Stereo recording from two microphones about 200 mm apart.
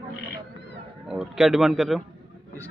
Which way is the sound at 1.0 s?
Centre (ahead or behind).